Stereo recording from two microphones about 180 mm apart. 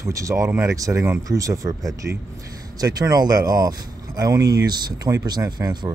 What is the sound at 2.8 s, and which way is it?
Speech, 20° right (ahead or behind).